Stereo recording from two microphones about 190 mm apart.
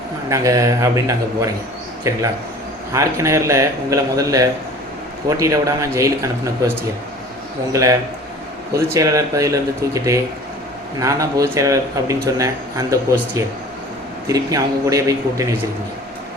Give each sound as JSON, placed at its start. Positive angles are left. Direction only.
{"t": 0.3, "sound": "speech", "side_deg": -15}
{"t": 2.9, "sound": "speech", "side_deg": -15}
{"t": 7.7, "sound": "speech", "side_deg": -15}